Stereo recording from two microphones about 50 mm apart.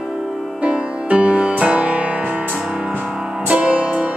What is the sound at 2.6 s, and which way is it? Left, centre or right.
Music, centre.